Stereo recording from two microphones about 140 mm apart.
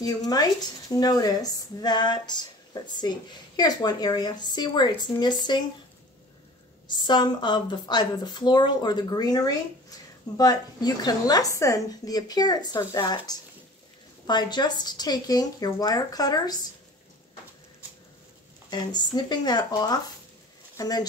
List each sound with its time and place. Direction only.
0.0 s speech: 25° left (ahead or behind)
6.9 s speech: 30° left (ahead or behind)
18.7 s speech: 30° left (ahead or behind)